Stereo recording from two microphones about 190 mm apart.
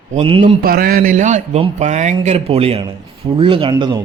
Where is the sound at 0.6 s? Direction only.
50° right (ahead or behind); by 4.0 s 25° right (ahead or behind).